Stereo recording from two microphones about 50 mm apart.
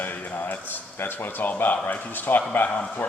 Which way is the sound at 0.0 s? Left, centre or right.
Left.